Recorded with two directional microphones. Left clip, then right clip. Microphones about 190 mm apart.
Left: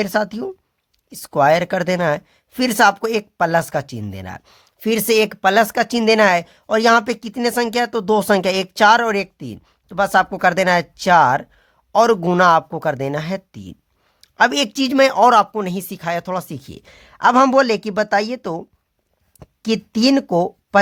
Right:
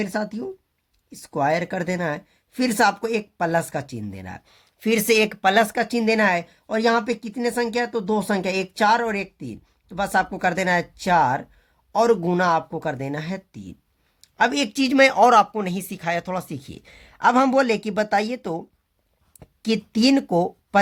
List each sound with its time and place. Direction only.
0.0 s speech: 45° left (ahead or behind); by 20.8 s 25° left (ahead or behind)